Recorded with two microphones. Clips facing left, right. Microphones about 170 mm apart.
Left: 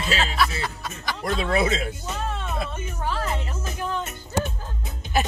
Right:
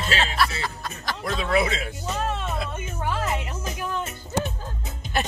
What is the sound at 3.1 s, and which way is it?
Music, 15° right (ahead or behind).